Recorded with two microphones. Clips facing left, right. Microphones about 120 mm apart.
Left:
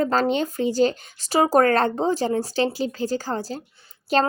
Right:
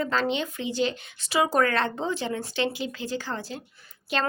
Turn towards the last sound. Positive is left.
turn(degrees=40)  # may be behind; listen again after turning